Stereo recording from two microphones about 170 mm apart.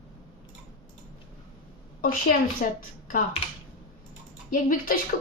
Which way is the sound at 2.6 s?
55° left (ahead or behind).